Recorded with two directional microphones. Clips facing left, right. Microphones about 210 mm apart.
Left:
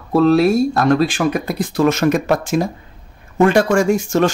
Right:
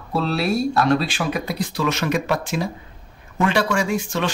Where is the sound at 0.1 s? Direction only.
50° left (ahead or behind).